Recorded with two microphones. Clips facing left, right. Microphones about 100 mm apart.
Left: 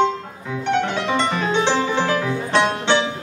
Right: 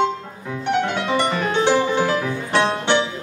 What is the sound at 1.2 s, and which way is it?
Music, 15° right (ahead or behind).